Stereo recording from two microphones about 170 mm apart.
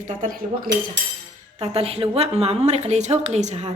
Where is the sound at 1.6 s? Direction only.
35° right (ahead or behind).